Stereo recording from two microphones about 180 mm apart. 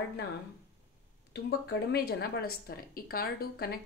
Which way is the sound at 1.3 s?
65° left (ahead or behind).